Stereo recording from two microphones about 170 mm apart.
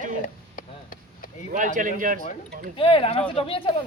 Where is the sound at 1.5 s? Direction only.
50° right (ahead or behind).